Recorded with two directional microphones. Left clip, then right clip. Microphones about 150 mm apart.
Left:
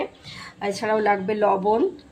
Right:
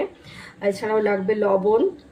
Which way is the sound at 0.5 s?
40° left (ahead or behind).